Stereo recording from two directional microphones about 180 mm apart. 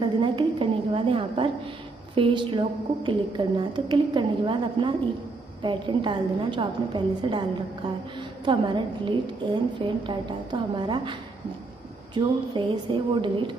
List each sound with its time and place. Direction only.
0.0 s a sound: 25° right (ahead or behind)
2.1 s a woman's voice: 30° right (ahead or behind)
8.5 s a woman's voice: 25° right (ahead or behind)